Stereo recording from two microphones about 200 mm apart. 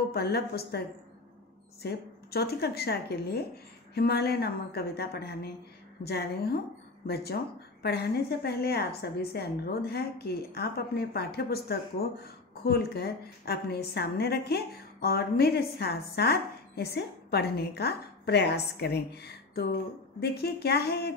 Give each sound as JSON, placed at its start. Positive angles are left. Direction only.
{"t": 0.1, "sound": "a woman's voice", "side_deg": 50}
{"t": 7.8, "sound": "a woman's voice", "side_deg": 55}